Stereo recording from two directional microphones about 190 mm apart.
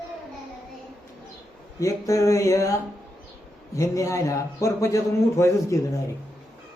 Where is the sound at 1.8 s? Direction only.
15° left (ahead or behind).